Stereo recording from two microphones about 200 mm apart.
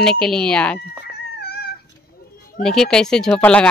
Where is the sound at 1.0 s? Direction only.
50° left (ahead or behind).